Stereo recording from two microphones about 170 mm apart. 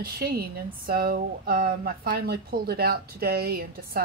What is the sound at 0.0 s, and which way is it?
Speech, 65° right (ahead or behind).